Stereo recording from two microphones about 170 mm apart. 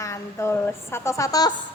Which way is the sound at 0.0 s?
15° left (ahead or behind).